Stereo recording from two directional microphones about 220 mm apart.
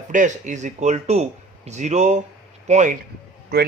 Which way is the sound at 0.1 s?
35° right (ahead or behind).